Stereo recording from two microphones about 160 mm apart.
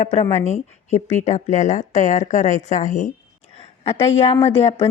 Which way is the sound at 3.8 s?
15° left (ahead or behind).